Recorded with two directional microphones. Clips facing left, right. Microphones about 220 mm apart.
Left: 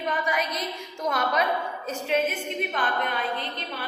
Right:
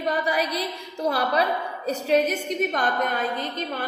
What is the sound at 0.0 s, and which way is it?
A woman's voice, 35° right (ahead or behind).